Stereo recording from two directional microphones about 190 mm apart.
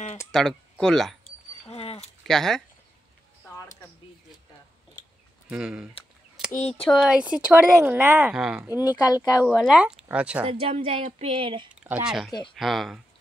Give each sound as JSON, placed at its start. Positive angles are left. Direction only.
{"t": 0.3, "sound": "speech", "side_deg": 0}
{"t": 1.7, "sound": "a sound", "side_deg": 30}
{"t": 2.2, "sound": "speech", "side_deg": 0}
{"t": 5.5, "sound": "speech", "side_deg": -5}
{"t": 8.8, "sound": "speech", "side_deg": 20}
{"t": 9.5, "sound": "speech", "side_deg": -5}
{"t": 10.4, "sound": "a woman's voice", "side_deg": -30}
{"t": 11.7, "sound": "speech", "side_deg": -5}
{"t": 12.3, "sound": "speech", "side_deg": 25}
{"t": 12.5, "sound": "speech", "side_deg": 0}